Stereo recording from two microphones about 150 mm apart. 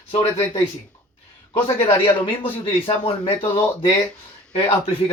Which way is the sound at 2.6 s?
40° left (ahead or behind).